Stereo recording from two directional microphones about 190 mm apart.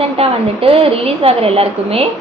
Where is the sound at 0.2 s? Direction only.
30° right (ahead or behind).